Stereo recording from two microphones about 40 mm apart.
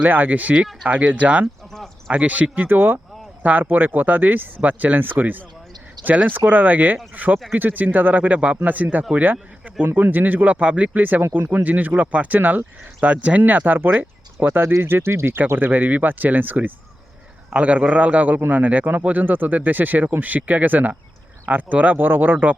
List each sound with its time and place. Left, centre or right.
0.0 s speech: right
2.6 s speech: right
9.2 s a sound: right
9.8 s speech: right
10.6 s speech: right
11.2 s speech: right
14.5 s speech: right
15.4 s speech: right
17.5 s speech: right
21.9 s speech: right